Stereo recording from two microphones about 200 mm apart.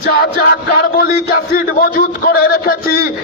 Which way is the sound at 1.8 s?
50° left (ahead or behind).